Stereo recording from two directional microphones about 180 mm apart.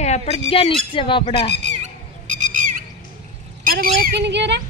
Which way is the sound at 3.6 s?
55° right (ahead or behind).